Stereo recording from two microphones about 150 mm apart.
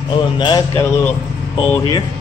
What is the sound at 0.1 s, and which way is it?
Speech, 30° left (ahead or behind).